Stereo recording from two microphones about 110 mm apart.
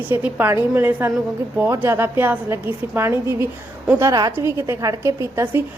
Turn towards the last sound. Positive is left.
turn(degrees=-25)  # may be behind; listen again after turning